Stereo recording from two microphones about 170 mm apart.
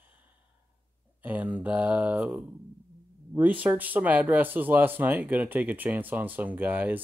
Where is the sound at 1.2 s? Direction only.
10° right (ahead or behind).